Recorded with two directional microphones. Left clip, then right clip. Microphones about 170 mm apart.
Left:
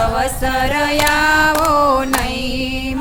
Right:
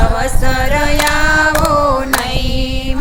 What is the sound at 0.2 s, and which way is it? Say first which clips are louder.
Female singing: even; 5° left (ahead or behind).